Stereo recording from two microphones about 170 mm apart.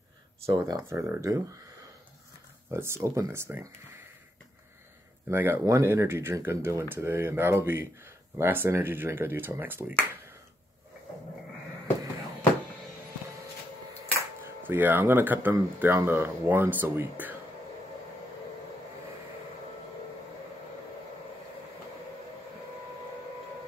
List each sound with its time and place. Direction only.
0.5 s speech: 20° right (ahead or behind)
2.7 s speech: 15° right (ahead or behind)
5.3 s speech: 15° right (ahead or behind)
14.4 s speech: 10° right (ahead or behind)